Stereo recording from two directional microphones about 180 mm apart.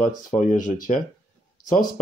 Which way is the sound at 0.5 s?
45° left (ahead or behind).